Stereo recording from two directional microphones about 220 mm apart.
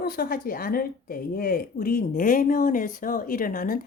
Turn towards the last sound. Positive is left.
turn(degrees=40)  # may be behind; listen again after turning